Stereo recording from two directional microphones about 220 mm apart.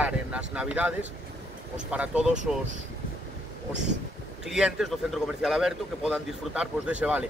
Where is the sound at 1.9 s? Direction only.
5° right (ahead or behind).